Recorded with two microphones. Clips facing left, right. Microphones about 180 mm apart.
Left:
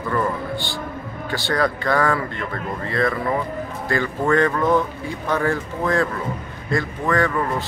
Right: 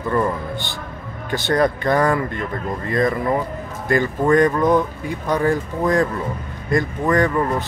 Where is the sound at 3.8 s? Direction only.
15° right (ahead or behind).